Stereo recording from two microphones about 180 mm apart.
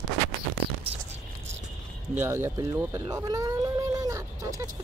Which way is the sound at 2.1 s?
15° right (ahead or behind).